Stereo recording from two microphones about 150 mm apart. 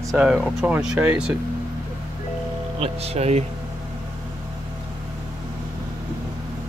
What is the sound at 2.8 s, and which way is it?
Speech, 45° right (ahead or behind).